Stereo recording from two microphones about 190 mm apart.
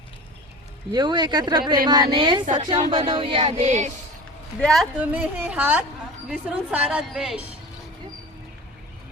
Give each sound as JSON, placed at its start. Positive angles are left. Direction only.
{"t": 0.9, "sound": "speech", "side_deg": -20}
{"t": 4.6, "sound": "a woman's voice", "side_deg": 0}